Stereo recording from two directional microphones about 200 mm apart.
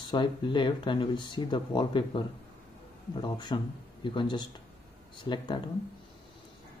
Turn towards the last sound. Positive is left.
turn(degrees=25)  # may be behind; listen again after turning